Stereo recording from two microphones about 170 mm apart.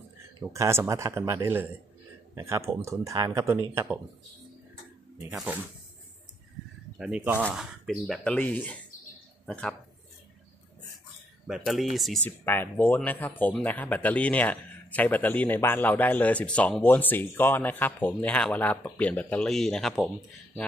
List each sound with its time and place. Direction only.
0.5 s speech: 15° right (ahead or behind)
5.3 s speech: 5° right (ahead or behind)
7.0 s speech: 5° right (ahead or behind)
11.4 s speech: centre (ahead or behind)
12.2 s speech: 10° left (ahead or behind)